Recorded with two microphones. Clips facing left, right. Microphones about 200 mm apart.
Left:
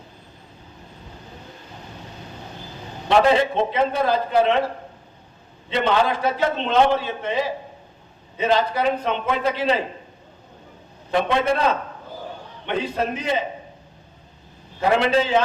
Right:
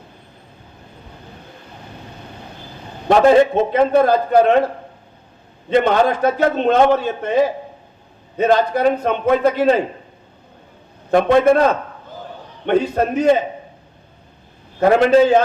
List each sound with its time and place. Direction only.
3.1 s a man's voice: 45° right (ahead or behind)
5.6 s a man's voice: 50° right (ahead or behind)
11.1 s a man's voice: 50° right (ahead or behind)
14.8 s a man's voice: 45° right (ahead or behind)